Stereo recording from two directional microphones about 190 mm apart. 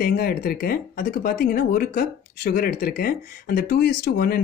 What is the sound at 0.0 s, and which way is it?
Speech, 55° left (ahead or behind).